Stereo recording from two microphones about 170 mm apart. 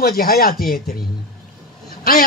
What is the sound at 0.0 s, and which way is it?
Speech, 60° left (ahead or behind).